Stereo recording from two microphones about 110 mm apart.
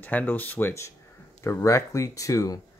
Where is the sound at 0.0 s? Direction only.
15° left (ahead or behind).